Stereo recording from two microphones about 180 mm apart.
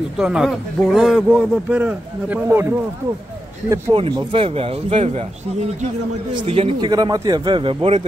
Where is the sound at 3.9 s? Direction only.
30° right (ahead or behind).